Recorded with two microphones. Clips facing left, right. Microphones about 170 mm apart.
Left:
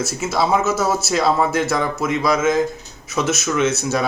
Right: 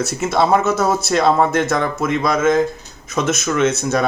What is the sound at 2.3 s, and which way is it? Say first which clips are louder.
Speech: right 3 dB; 55° right (ahead or behind).